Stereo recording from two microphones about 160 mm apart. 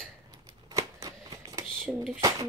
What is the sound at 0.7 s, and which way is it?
Shuffling cards, 25° right (ahead or behind).